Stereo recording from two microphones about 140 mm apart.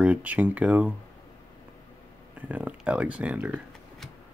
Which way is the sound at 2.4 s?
10° right (ahead or behind).